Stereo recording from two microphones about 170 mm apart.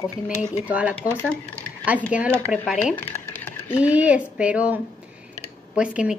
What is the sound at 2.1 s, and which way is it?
Speech, 5° right (ahead or behind).